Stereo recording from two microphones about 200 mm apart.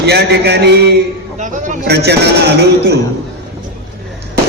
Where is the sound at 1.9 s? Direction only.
55° right (ahead or behind).